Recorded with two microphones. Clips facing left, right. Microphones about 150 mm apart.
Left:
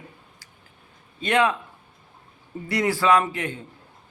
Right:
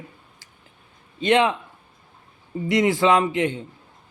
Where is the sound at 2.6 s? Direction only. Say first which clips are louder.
Right 3 dB; 20° right (ahead or behind).